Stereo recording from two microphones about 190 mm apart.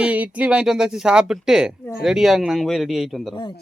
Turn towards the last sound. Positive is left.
turn(degrees=0)  # may be behind; listen again after turning